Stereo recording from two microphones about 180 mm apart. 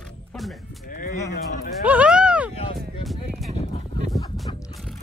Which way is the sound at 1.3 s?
55° left (ahead or behind).